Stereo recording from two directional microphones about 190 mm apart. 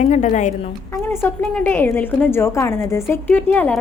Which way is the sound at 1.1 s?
10° left (ahead or behind).